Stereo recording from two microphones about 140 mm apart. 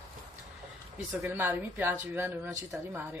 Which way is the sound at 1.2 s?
15° right (ahead or behind).